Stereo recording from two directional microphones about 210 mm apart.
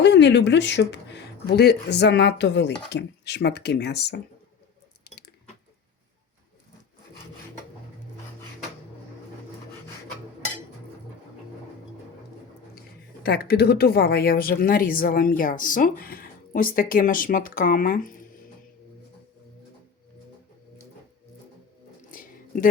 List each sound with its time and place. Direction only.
0.0 s speech: 55° left (ahead or behind)
13.2 s speech: 50° left (ahead or behind)
22.1 s a sound: 40° left (ahead or behind)